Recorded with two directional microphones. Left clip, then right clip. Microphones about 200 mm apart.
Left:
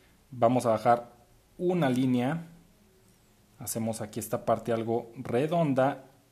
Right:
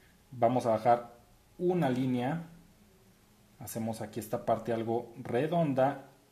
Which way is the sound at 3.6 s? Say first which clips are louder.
Left 4 dB; 30° left (ahead or behind).